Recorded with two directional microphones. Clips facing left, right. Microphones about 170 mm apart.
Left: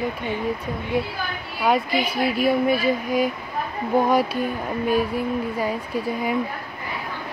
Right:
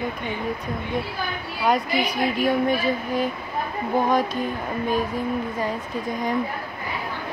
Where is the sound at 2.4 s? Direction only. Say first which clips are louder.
Left 2 dB; 10° left (ahead or behind).